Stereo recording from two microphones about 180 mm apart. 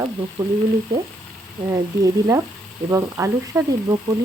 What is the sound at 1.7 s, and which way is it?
Speech, 15° right (ahead or behind).